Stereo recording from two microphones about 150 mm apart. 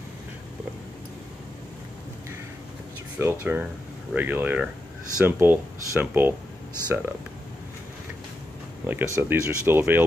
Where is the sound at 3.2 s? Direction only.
15° right (ahead or behind).